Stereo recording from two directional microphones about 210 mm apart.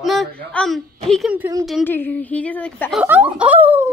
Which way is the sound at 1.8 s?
10° left (ahead or behind).